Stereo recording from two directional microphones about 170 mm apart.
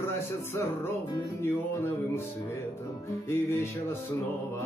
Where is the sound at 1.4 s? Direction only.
15° left (ahead or behind).